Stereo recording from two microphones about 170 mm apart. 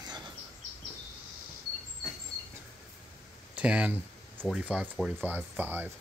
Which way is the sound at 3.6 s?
10° right (ahead or behind).